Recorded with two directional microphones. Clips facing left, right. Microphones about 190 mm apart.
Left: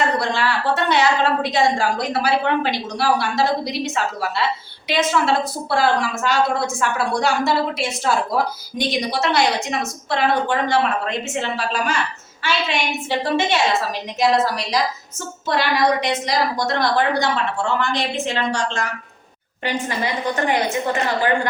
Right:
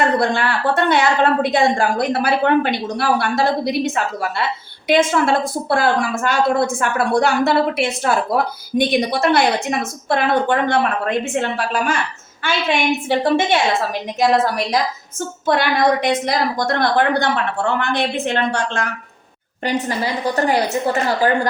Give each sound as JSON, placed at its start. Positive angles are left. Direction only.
{"t": 0.2, "sound": "a woman's voice", "side_deg": -55}
{"t": 20.0, "sound": "a woman's voice", "side_deg": -35}